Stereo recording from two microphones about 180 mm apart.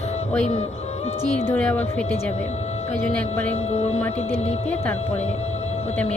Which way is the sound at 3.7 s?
35° left (ahead or behind).